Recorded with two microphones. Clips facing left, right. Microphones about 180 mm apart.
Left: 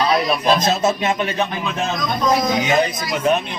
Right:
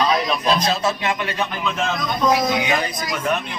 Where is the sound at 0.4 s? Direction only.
20° left (ahead or behind).